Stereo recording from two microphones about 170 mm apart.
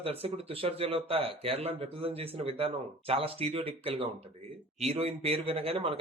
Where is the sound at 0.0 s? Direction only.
35° right (ahead or behind).